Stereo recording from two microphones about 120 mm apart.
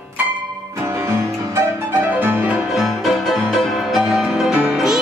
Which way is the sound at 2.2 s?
10° right (ahead or behind).